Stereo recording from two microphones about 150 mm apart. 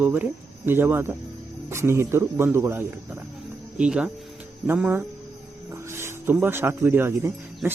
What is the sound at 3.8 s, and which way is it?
Speech, 5° right (ahead or behind).